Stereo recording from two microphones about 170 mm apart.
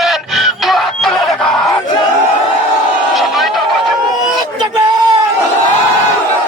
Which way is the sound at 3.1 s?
Centre (ahead or behind).